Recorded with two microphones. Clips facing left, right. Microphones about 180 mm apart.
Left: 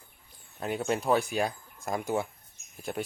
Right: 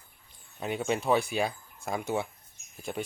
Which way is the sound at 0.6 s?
Centre (ahead or behind).